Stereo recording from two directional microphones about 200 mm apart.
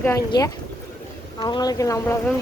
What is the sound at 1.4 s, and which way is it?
Speech, 20° left (ahead or behind).